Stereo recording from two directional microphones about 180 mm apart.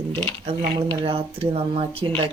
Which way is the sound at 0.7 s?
30° right (ahead or behind).